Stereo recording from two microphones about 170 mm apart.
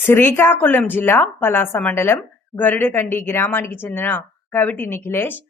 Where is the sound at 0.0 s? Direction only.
15° left (ahead or behind).